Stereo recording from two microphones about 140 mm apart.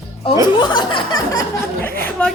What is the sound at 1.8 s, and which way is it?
Speech, 10° left (ahead or behind).